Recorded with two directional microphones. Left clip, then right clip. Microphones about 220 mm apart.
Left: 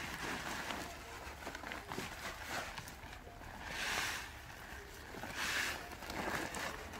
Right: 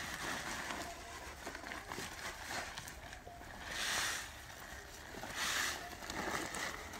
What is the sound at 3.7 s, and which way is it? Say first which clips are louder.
Boat: right 1 dB; 15° right (ahead or behind).